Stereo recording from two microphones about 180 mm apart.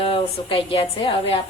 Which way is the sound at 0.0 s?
30° left (ahead or behind).